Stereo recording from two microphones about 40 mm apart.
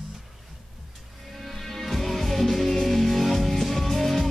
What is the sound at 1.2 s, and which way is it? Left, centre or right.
Music, centre.